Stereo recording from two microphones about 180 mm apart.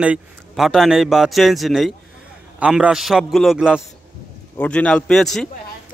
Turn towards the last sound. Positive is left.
turn(degrees=0)  # may be behind; listen again after turning